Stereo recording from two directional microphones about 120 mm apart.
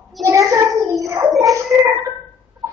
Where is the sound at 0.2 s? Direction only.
25° right (ahead or behind).